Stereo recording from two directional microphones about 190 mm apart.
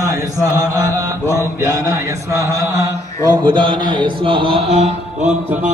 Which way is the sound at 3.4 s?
25° right (ahead or behind).